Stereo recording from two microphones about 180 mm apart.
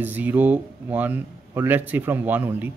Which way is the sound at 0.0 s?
10° right (ahead or behind).